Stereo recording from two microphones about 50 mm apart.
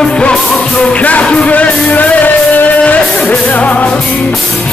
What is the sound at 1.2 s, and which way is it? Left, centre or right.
Music, centre.